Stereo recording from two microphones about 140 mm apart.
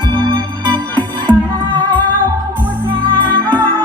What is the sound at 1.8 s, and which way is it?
Music, 10° left (ahead or behind).